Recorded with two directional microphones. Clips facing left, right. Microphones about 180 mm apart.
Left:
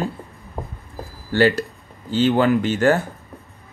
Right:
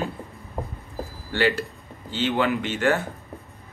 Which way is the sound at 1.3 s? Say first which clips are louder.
Left 6 dB; 40° left (ahead or behind).